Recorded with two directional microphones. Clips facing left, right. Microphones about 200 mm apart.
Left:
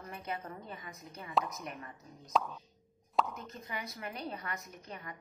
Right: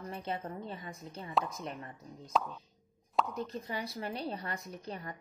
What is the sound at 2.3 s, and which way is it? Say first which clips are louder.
Speech: even; centre (ahead or behind).